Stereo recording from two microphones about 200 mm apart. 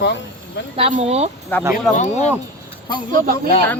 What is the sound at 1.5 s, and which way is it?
Speech, 10° left (ahead or behind).